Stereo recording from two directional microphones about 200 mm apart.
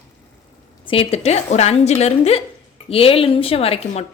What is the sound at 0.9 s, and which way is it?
A woman's voice, 30° left (ahead or behind).